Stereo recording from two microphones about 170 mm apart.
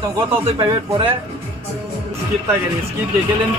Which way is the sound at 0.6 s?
30° right (ahead or behind).